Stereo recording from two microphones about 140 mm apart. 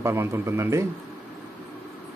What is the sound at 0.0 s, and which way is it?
Speech, 20° right (ahead or behind).